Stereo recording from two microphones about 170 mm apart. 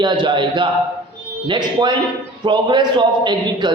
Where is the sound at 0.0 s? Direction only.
25° right (ahead or behind).